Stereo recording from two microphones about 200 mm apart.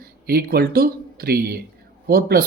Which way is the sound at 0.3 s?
50° right (ahead or behind).